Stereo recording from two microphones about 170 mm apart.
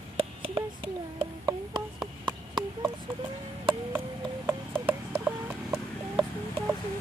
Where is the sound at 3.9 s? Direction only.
10° right (ahead or behind).